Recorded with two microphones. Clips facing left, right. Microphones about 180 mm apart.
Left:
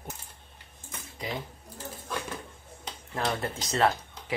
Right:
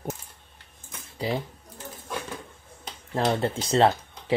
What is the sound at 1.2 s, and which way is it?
Speech, 30° right (ahead or behind).